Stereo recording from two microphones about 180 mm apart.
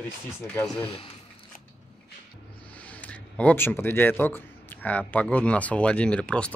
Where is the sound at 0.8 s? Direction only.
30° left (ahead or behind).